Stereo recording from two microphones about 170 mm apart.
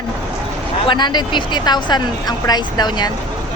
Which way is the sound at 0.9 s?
25° left (ahead or behind).